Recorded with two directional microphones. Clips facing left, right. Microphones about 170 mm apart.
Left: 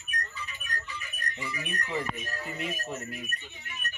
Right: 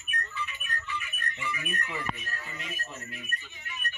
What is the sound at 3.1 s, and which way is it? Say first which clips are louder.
Speech: left 4 dB; 40° left (ahead or behind).